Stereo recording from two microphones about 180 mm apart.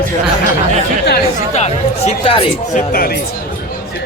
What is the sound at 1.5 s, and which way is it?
Speech, 35° left (ahead or behind).